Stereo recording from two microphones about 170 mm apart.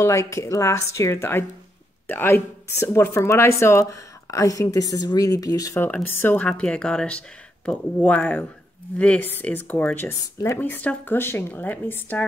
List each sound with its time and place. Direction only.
0.0 s speech: 20° left (ahead or behind)